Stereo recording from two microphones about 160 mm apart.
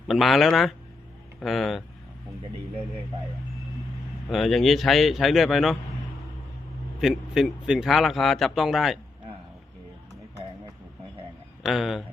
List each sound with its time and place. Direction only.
0.1 s a man's voice: centre (ahead or behind)
4.3 s a man's voice: centre (ahead or behind)
7.0 s a man's voice: centre (ahead or behind)
11.6 s a man's voice: centre (ahead or behind)